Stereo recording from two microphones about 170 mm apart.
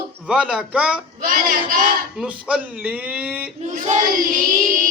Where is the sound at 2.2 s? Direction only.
5° right (ahead or behind).